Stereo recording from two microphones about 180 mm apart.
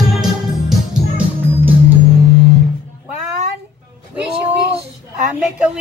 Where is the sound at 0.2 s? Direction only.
5° right (ahead or behind).